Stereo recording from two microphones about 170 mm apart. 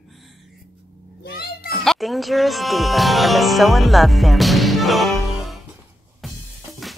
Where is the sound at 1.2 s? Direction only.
70° left (ahead or behind).